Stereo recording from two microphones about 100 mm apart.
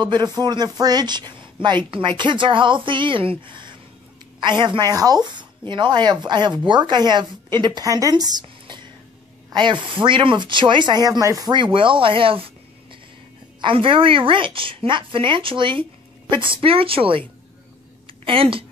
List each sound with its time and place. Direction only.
0.0 s a woman's voice: 50° right (ahead or behind)
11.5 s a woman's voice: 55° right (ahead or behind)
13.6 s a woman's voice: 60° right (ahead or behind)
18.2 s a woman's voice: 65° right (ahead or behind)